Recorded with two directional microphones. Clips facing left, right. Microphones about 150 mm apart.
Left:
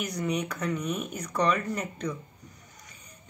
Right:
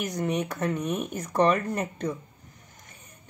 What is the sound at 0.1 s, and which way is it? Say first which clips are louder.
A woman's voice: right 2 dB; 45° right (ahead or behind).